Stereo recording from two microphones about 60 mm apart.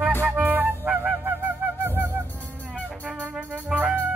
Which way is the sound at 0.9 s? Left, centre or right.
Centre.